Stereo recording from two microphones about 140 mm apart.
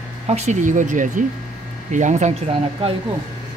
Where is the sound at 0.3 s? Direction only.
55° right (ahead or behind).